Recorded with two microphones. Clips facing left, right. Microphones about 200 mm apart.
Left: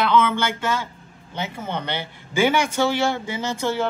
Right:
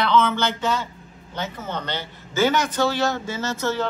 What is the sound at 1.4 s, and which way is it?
Speech, 10° left (ahead or behind).